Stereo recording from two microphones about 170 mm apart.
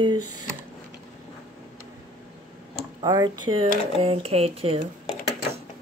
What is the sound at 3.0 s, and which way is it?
Speech, 25° right (ahead or behind).